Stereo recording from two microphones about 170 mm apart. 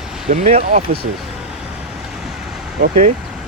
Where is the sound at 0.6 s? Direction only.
55° right (ahead or behind).